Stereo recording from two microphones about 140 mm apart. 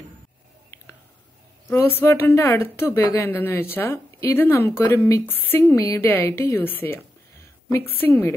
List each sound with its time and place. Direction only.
1.7 s a woman's voice: 15° left (ahead or behind)